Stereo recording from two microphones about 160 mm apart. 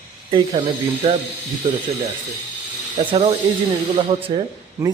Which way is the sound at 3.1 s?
35° right (ahead or behind).